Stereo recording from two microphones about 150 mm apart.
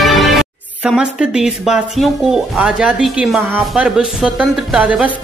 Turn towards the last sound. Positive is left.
turn(degrees=-5)  # may be behind; listen again after turning